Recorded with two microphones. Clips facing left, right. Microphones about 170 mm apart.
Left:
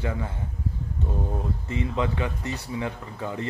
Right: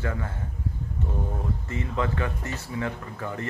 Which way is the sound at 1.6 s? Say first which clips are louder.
Left 2 dB; 20° left (ahead or behind).